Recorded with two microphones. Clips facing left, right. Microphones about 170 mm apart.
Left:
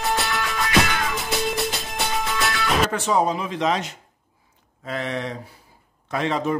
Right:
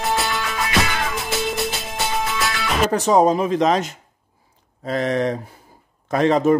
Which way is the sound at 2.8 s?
40° right (ahead or behind).